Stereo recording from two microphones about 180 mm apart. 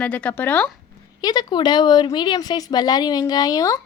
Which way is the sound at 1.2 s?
20° left (ahead or behind).